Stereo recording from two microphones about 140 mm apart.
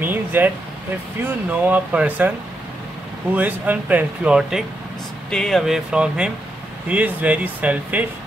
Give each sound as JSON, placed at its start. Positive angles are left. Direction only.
{"t": 0.0, "sound": "air conditioning", "side_deg": -15}
{"t": 1.2, "sound": "speech", "side_deg": -10}
{"t": 3.3, "sound": "speech", "side_deg": -10}